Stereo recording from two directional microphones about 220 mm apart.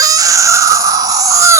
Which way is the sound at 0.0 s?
15° right (ahead or behind).